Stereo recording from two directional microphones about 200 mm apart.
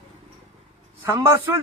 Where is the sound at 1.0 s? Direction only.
15° right (ahead or behind).